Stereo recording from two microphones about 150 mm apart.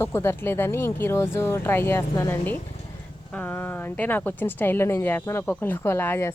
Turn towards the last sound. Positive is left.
turn(degrees=15)  # may be behind; listen again after turning